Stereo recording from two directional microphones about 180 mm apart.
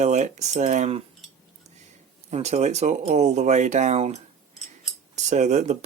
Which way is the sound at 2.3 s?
35° right (ahead or behind).